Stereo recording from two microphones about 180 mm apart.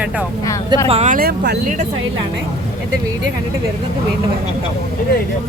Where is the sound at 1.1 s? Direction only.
60° right (ahead or behind).